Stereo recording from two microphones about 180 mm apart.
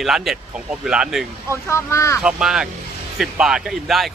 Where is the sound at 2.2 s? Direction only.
5° right (ahead or behind).